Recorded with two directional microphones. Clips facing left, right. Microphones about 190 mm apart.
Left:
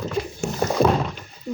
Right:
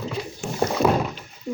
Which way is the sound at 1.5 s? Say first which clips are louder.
Even; 10° right (ahead or behind).